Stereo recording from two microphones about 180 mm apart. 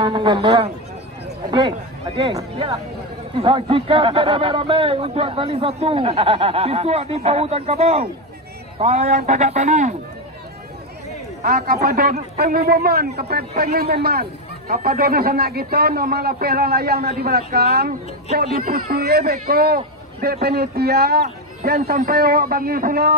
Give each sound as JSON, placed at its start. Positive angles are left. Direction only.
{"t": 0.0, "sound": "a man's voice", "side_deg": -25}
{"t": 2.3, "sound": "a man's voice", "side_deg": -20}
{"t": 3.3, "sound": "speech", "side_deg": -30}
{"t": 11.4, "sound": "a man's voice", "side_deg": -60}